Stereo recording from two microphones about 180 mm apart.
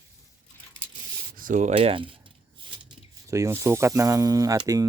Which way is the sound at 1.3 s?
45° right (ahead or behind).